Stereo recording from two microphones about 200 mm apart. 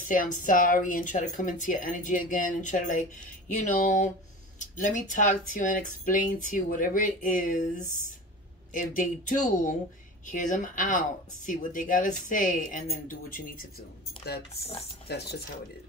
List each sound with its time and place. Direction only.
0.1 s speech: 40° left (ahead or behind)
8.7 s speech: 40° left (ahead or behind)
15.0 s stir: 55° left (ahead or behind)